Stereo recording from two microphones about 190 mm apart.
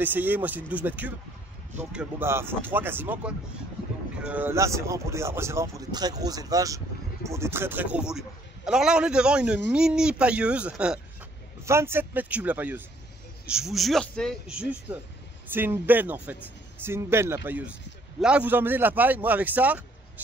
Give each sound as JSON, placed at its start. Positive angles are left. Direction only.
{"t": 0.0, "sound": "a man's voice", "side_deg": -10}